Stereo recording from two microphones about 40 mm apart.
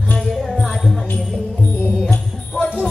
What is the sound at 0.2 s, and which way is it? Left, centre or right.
Music, centre.